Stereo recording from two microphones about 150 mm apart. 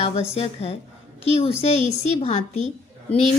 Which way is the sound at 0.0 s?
45° left (ahead or behind).